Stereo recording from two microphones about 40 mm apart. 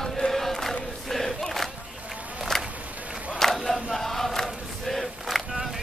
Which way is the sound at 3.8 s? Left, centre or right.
Centre.